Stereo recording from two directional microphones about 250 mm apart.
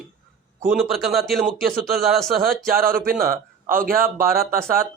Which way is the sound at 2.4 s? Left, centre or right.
Right.